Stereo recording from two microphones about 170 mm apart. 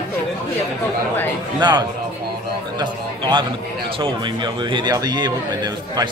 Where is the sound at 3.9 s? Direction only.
30° right (ahead or behind).